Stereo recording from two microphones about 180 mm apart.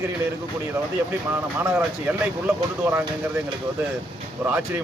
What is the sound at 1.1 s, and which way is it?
A man's voice, 10° right (ahead or behind).